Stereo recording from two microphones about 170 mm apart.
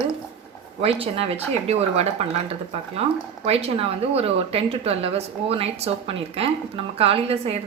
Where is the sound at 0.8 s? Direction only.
35° right (ahead or behind).